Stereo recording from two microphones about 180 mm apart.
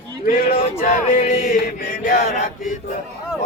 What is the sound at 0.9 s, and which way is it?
Chant, 45° left (ahead or behind).